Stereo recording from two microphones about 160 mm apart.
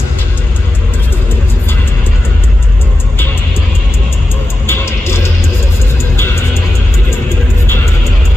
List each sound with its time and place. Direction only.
4.6 s music: 15° left (ahead or behind)